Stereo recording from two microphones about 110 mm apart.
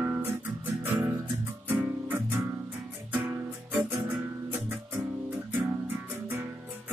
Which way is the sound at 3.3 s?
20° right (ahead or behind).